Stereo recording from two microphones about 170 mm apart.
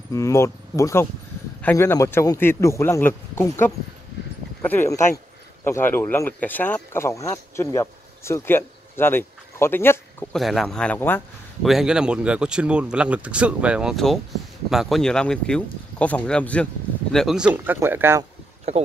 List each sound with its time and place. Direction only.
0.1 s speech: 15° left (ahead or behind)
10.3 s speech: centre (ahead or behind)
11.6 s speech: 5° right (ahead or behind)